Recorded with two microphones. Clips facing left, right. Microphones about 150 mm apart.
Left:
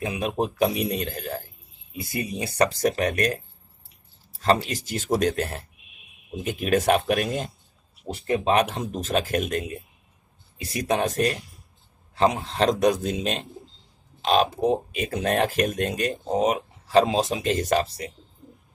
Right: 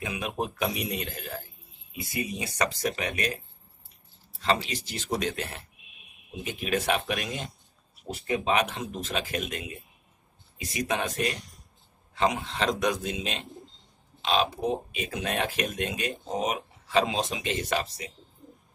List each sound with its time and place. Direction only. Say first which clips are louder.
0.0 s speech: left 6 dB; 35° left (ahead or behind)
4.4 s speech: left 5 dB; 45° left (ahead or behind)
8.1 s speech: left 4 dB; 40° left (ahead or behind)
11.3 s speech: left 3 dB; 5° left (ahead or behind)
12.2 s speech: left 5 dB; 35° left (ahead or behind)